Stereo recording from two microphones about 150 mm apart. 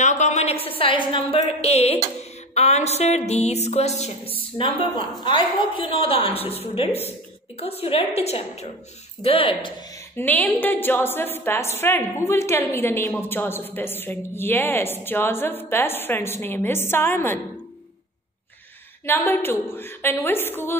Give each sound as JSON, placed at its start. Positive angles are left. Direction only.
{"t": 0.0, "sound": "a woman's voice", "side_deg": 50}
{"t": 10.1, "sound": "a woman's voice", "side_deg": 10}
{"t": 19.0, "sound": "a woman's voice", "side_deg": 15}